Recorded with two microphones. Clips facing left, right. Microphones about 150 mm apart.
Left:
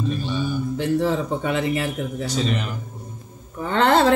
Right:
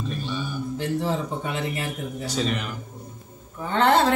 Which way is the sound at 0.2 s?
Centre (ahead or behind).